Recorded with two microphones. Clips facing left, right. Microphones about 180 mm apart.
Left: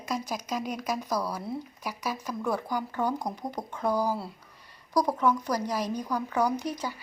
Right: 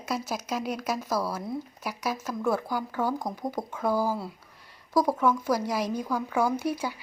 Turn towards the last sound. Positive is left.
turn(degrees=-10)  # may be behind; listen again after turning